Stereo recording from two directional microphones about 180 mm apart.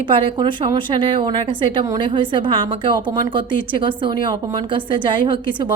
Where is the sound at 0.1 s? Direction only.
25° right (ahead or behind).